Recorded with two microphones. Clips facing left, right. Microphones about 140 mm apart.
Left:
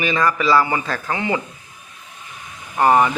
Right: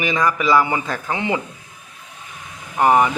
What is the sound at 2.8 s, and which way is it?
Speech, 10° right (ahead or behind).